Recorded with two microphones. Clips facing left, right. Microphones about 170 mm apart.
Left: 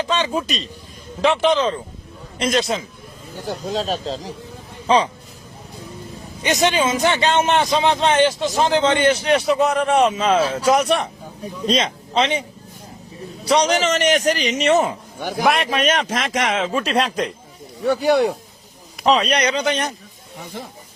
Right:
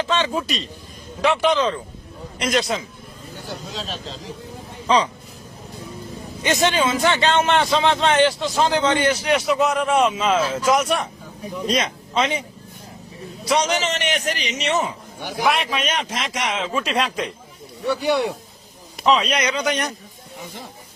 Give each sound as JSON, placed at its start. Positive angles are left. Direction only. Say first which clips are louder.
{"t": 0.0, "sound": "a man's voice", "louder": "left 1 dB", "side_deg": 15}
{"t": 3.4, "sound": "a man's voice", "louder": "left 9 dB", "side_deg": 45}
{"t": 6.4, "sound": "a man's voice", "louder": "left 1 dB", "side_deg": 15}
{"t": 13.4, "sound": "a man's voice", "louder": "left 3 dB", "side_deg": 30}